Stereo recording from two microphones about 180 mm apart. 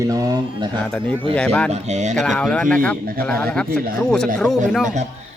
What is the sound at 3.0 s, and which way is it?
Speech, 55° right (ahead or behind).